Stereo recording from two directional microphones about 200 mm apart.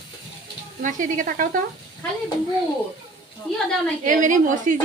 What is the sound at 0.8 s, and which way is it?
Speech, 40° right (ahead or behind).